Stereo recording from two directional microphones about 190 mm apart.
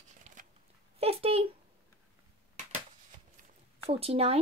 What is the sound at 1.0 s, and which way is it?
Speech, 30° right (ahead or behind).